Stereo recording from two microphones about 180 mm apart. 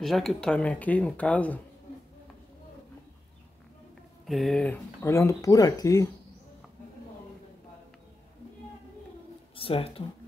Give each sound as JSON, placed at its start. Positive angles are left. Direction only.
{"t": 0.0, "sound": "speech", "side_deg": 0}
{"t": 4.3, "sound": "speech", "side_deg": 0}
{"t": 9.6, "sound": "speech", "side_deg": 30}